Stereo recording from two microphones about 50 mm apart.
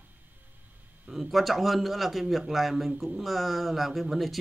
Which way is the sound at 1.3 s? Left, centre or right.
Centre.